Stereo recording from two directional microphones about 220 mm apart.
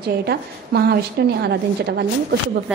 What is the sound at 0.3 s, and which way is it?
Speech, 45° right (ahead or behind).